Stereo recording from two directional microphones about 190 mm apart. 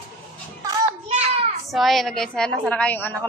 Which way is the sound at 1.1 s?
35° right (ahead or behind).